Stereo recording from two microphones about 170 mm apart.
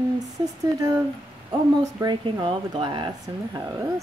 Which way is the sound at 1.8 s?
25° right (ahead or behind).